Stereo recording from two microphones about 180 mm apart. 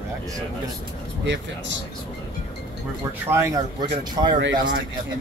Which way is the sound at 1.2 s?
75° right (ahead or behind).